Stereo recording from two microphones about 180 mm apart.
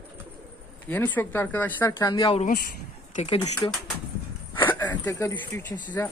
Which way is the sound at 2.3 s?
40° left (ahead or behind).